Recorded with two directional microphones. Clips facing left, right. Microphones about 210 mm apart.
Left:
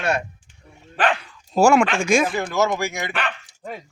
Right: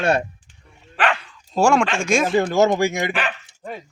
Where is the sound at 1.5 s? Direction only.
Centre (ahead or behind).